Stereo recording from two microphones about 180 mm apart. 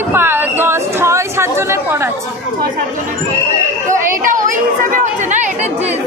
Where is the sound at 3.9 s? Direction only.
45° right (ahead or behind).